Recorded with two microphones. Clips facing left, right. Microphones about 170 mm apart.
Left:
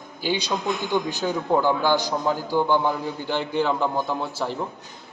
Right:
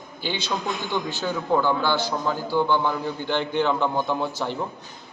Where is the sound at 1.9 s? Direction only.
40° left (ahead or behind).